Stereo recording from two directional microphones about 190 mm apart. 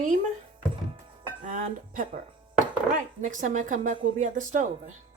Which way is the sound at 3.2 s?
40° right (ahead or behind).